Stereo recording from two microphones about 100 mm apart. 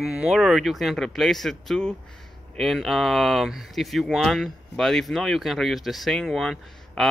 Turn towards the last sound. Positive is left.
turn(degrees=0)  # may be behind; listen again after turning